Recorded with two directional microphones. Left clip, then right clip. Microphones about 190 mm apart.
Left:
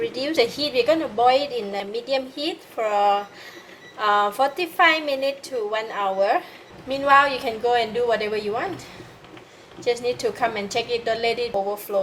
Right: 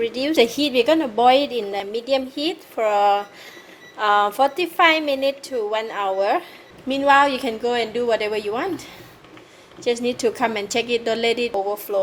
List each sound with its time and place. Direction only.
0.0 s a woman's voice: 50° right (ahead or behind)
3.9 s a woman's voice: 40° right (ahead or behind)
9.8 s a woman's voice: 40° right (ahead or behind)